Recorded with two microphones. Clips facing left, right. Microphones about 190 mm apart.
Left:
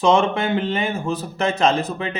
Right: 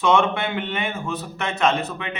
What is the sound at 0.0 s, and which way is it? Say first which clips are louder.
Speech: left 2 dB; 35° left (ahead or behind).